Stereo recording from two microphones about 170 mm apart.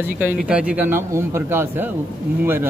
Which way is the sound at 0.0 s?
10° right (ahead or behind).